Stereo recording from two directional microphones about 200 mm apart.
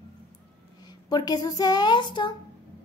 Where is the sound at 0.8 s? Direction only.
20° left (ahead or behind).